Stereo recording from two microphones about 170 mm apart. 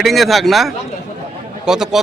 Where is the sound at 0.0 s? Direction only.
Centre (ahead or behind).